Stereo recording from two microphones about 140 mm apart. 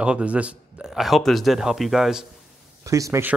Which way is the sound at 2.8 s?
25° right (ahead or behind).